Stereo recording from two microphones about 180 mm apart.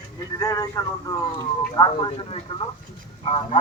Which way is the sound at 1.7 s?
25° left (ahead or behind).